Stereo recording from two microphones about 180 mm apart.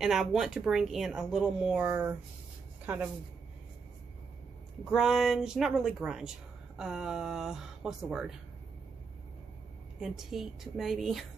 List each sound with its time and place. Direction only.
0.0 s speech: centre (ahead or behind)
4.9 s speech: centre (ahead or behind)
9.9 s speech: centre (ahead or behind)